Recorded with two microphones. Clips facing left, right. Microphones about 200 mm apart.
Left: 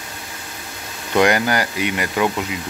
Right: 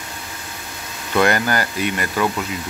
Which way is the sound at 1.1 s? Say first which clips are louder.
Left 1 dB; 15° left (ahead or behind).